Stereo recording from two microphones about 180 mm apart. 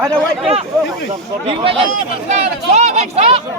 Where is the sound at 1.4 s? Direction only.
30° right (ahead or behind).